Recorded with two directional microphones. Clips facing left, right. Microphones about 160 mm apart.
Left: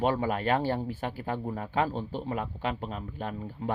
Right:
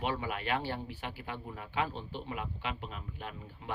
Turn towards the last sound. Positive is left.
turn(degrees=45)  # may be behind; listen again after turning